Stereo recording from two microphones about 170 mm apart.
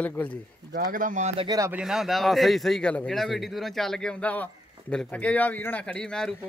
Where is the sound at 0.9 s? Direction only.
50° right (ahead or behind).